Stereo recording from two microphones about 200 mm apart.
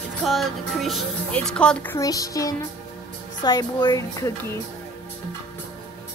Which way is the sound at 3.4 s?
20° left (ahead or behind).